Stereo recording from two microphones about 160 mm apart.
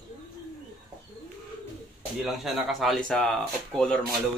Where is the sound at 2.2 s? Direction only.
Centre (ahead or behind).